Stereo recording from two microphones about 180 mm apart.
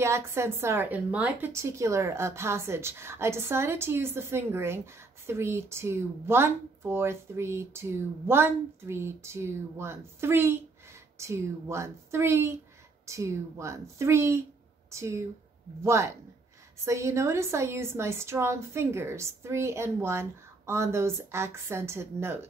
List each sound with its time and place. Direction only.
0.0 s speech: 15° right (ahead or behind)